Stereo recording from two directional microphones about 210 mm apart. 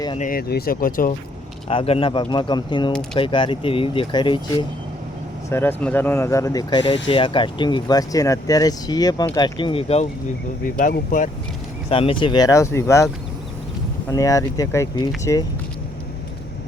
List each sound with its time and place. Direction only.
0.2 s speech: 45° left (ahead or behind)
1.6 s speech: 25° left (ahead or behind)
5.5 s speech: 10° left (ahead or behind); by 10.1 s 30° left (ahead or behind)
10.6 s speech: 40° left (ahead or behind)
11.9 s speech: 25° left (ahead or behind)
14.1 s speech: 15° left (ahead or behind)